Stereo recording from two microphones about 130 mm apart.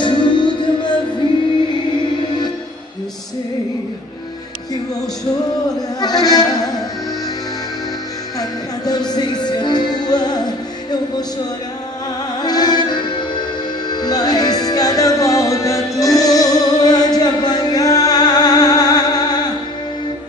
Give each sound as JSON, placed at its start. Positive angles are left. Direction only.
{"t": 0.0, "sound": "music", "side_deg": 40}
{"t": 5.8, "sound": "music", "side_deg": 30}
{"t": 8.4, "sound": "music", "side_deg": 30}
{"t": 12.4, "sound": "music", "side_deg": 30}